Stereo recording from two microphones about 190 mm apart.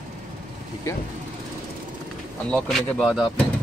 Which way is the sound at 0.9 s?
15° left (ahead or behind).